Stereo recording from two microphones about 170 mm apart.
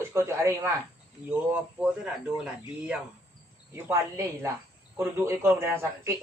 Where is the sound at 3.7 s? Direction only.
15° right (ahead or behind).